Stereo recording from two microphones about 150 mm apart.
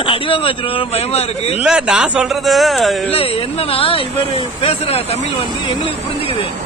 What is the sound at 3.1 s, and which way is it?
A man's voice, 40° left (ahead or behind).